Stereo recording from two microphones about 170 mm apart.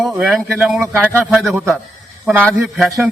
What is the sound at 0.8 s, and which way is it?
Speech, 15° right (ahead or behind).